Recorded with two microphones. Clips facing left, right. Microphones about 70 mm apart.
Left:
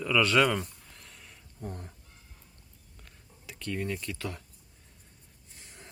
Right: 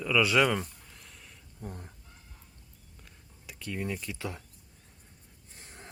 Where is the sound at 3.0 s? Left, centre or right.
Centre.